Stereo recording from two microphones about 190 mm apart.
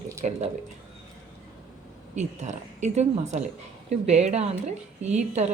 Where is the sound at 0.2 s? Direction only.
35° right (ahead or behind).